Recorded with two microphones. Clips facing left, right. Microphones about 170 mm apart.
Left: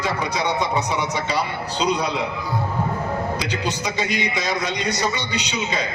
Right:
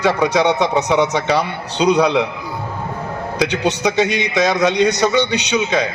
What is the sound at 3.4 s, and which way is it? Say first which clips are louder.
A man's voice: right 8 dB; 85° right.